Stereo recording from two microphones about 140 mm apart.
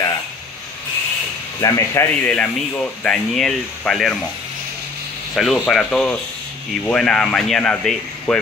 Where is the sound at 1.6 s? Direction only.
20° left (ahead or behind); by 4.1 s 5° left (ahead or behind).